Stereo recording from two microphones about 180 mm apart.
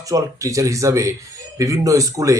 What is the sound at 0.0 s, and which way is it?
Speech, 20° right (ahead or behind).